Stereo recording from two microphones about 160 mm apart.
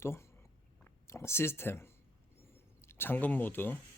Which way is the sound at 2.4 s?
15° left (ahead or behind).